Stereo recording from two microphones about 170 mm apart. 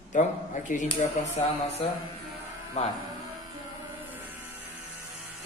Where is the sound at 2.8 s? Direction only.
40° left (ahead or behind).